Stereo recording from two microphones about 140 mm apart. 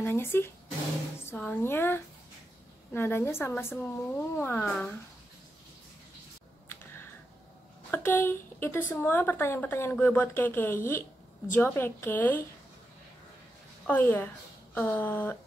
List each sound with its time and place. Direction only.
0.0 s a woman's voice: 15° left (ahead or behind)
7.9 s a woman's voice: 15° left (ahead or behind)
13.8 s a woman's voice: 15° left (ahead or behind)